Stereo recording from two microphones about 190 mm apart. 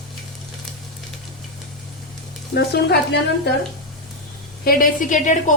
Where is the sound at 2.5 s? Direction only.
60° left (ahead or behind).